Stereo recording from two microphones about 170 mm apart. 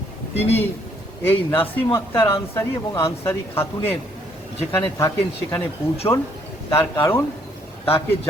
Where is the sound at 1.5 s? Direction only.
15° left (ahead or behind).